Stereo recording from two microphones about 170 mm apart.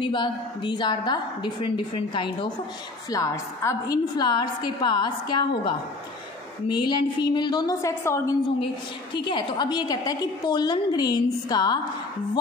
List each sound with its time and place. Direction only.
0.0 s a woman's voice: 25° left (ahead or behind)
3.1 s a woman's voice: 20° left (ahead or behind)
9.1 s a woman's voice: 30° left (ahead or behind)